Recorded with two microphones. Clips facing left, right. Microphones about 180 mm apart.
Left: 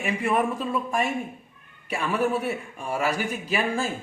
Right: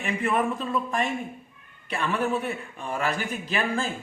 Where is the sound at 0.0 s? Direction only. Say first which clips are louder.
Left 1 dB; 10° left (ahead or behind).